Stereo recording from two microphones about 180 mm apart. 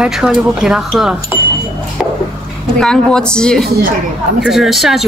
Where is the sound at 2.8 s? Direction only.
5° left (ahead or behind).